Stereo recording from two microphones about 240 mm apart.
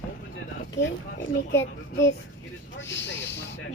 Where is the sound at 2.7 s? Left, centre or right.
Left.